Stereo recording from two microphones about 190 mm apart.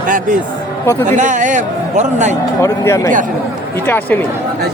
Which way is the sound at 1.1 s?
40° right (ahead or behind).